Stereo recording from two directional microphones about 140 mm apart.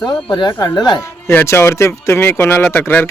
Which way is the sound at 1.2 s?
20° left (ahead or behind).